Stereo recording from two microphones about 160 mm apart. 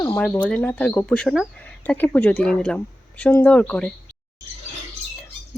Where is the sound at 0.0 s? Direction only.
10° left (ahead or behind).